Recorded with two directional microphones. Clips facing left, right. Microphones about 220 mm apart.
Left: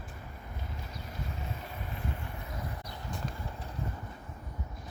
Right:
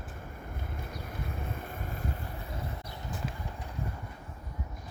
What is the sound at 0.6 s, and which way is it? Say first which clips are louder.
Vehicle: right 2 dB; 55° right (ahead or behind).